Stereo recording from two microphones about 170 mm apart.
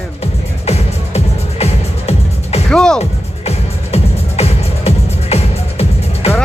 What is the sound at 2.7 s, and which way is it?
Music, 5° left (ahead or behind).